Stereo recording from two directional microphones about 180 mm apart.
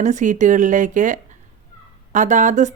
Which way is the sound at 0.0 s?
40° right (ahead or behind).